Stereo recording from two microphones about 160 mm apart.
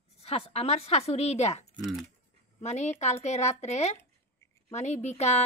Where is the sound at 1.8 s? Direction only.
Centre (ahead or behind).